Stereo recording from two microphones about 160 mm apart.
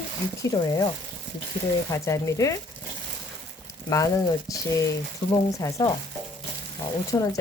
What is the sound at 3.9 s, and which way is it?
Speech, 20° left (ahead or behind).